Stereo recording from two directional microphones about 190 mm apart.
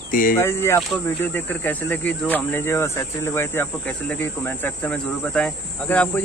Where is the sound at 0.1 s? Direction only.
50° left (ahead or behind).